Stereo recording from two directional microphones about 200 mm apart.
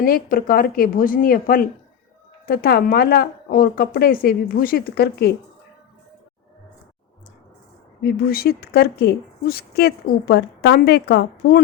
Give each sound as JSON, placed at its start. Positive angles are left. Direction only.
{"t": 0.0, "sound": "a woman's voice", "side_deg": 45}
{"t": 8.0, "sound": "a woman's voice", "side_deg": 50}